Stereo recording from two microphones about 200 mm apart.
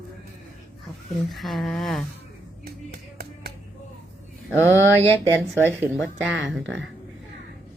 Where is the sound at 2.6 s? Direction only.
50° right (ahead or behind).